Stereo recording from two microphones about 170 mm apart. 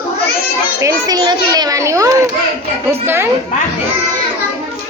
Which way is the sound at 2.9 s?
15° right (ahead or behind).